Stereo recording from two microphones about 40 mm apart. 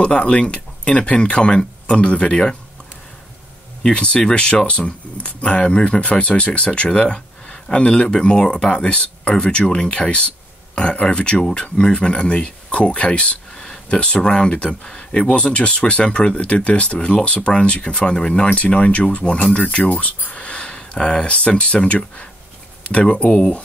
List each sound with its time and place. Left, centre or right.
0.0 s speech: left
3.8 s speech: left